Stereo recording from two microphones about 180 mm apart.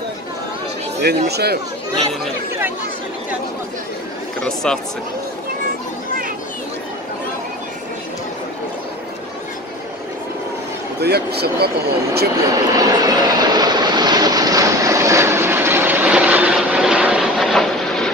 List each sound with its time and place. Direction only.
1.3 s speech: 60° right (ahead or behind)
4.4 s speech: 5° left (ahead or behind)
11.0 s speech: 65° right (ahead or behind)
12.4 s vehicle: 20° right (ahead or behind); by 18.1 s centre (ahead or behind)